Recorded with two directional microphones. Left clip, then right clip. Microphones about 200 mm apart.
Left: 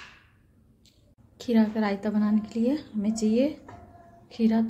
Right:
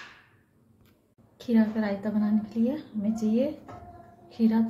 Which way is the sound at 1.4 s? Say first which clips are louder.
Left 1 dB; 35° left (ahead or behind).